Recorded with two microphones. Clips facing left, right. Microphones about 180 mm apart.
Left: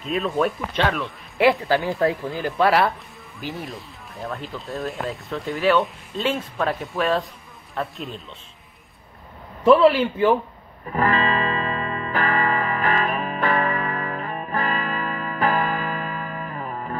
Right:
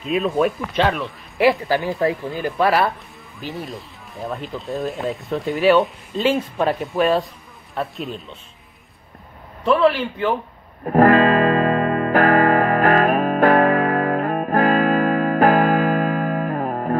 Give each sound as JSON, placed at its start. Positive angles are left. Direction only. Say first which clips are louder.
{"t": 0.0, "sound": "speech", "louder": "right 3 dB", "side_deg": 0}
{"t": 6.3, "sound": "speech", "louder": "right 4 dB", "side_deg": -20}
{"t": 7.7, "sound": "speech", "louder": "right 3 dB", "side_deg": 0}
{"t": 9.7, "sound": "a man's voice", "louder": "left 2 dB", "side_deg": 10}
{"t": 10.8, "sound": "music", "louder": "right 9 dB", "side_deg": -50}